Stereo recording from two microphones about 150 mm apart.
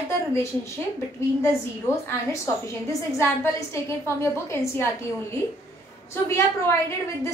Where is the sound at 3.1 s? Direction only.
20° left (ahead or behind).